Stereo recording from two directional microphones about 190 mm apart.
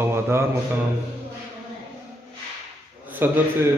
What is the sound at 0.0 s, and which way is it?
Mantra, 15° right (ahead or behind).